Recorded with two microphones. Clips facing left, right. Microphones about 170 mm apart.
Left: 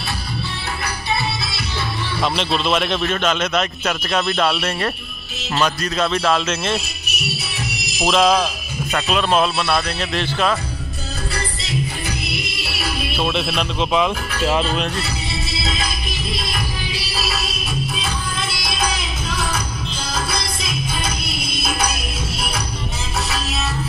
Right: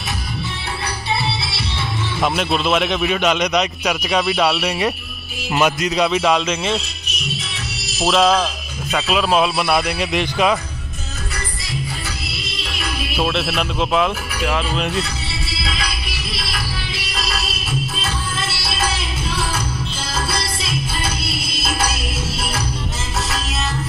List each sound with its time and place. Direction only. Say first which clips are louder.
2.2 s a man's voice: right 2 dB; 5° right (ahead or behind)
5.5 s a man's voice: right 3 dB; 15° right (ahead or behind)
6.7 s music: right 1 dB; 10° left (ahead or behind)
8.2 s speech: even; 10° left (ahead or behind)
8.9 s speech: right 1 dB; 5° right (ahead or behind)
9.6 s a man's voice: right 2 dB; 15° right (ahead or behind)
12.3 s music: left 2 dB; 15° left (ahead or behind); by 14.4 s 5° right (ahead or behind)
15.6 s music: right 1 dB; 20° left (ahead or behind); by 21.9 s 5° right (ahead or behind)